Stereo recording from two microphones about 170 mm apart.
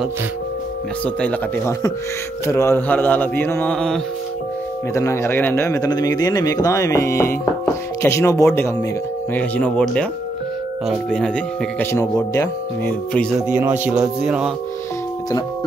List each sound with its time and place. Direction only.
1.0 s a man's voice: 10° left (ahead or behind)
4.9 s a man's voice: 15° left (ahead or behind)
13.5 s speech: 10° right (ahead or behind)
14.2 s music: 5° right (ahead or behind)